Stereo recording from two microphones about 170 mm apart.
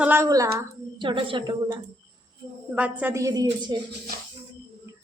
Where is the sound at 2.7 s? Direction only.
10° right (ahead or behind).